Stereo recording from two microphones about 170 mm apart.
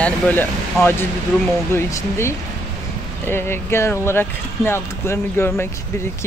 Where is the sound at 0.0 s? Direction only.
10° left (ahead or behind).